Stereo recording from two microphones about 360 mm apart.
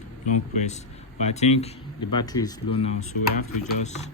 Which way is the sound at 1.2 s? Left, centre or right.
Centre.